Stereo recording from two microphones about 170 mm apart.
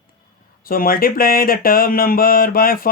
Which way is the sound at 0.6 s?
60° left (ahead or behind).